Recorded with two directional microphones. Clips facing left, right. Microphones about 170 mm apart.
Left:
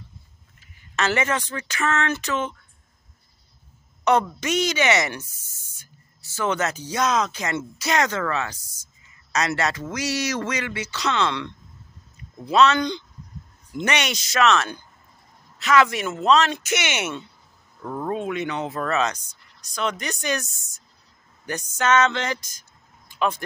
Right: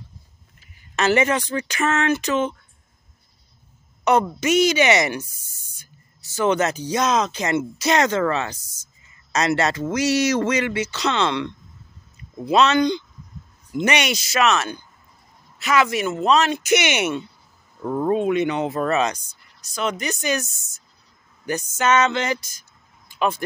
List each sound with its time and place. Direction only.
0.9 s speech: 15° right (ahead or behind)
4.0 s speech: 5° right (ahead or behind)